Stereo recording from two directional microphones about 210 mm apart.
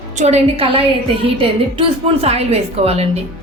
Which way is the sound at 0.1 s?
35° right (ahead or behind).